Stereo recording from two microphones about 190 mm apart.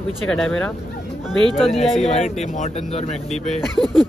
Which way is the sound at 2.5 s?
35° left (ahead or behind).